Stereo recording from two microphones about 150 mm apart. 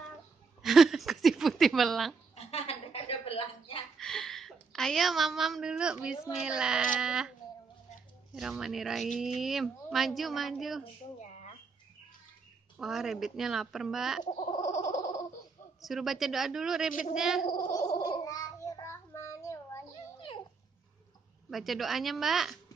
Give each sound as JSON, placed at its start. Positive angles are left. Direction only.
{"t": 0.6, "sound": "a sound", "side_deg": 0}
{"t": 2.3, "sound": "a sound", "side_deg": 45}
{"t": 4.0, "sound": "a woman's voice", "side_deg": 0}
{"t": 8.4, "sound": "speech", "side_deg": 0}
{"t": 11.1, "sound": "a sound", "side_deg": 50}
{"t": 12.7, "sound": "speech", "side_deg": -5}
{"t": 14.4, "sound": "a sound", "side_deg": 50}
{"t": 15.8, "sound": "speech", "side_deg": 0}
{"t": 17.5, "sound": "speech", "side_deg": 60}
{"t": 18.0, "sound": "child singing", "side_deg": 25}
{"t": 20.2, "sound": "dog", "side_deg": 35}
{"t": 21.5, "sound": "speech", "side_deg": 0}